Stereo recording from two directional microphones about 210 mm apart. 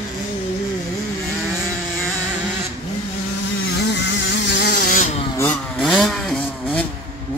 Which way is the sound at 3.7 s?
55° left (ahead or behind).